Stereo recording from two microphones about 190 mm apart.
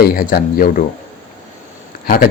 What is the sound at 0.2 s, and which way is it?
Speech, 50° left (ahead or behind).